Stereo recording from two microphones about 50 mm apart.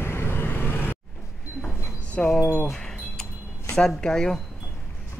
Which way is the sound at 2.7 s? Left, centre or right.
Centre.